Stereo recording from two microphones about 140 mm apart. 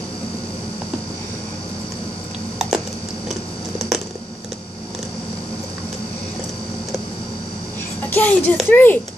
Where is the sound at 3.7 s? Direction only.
Centre (ahead or behind).